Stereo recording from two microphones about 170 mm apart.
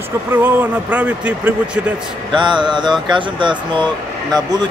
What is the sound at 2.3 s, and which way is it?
Speech, 25° right (ahead or behind).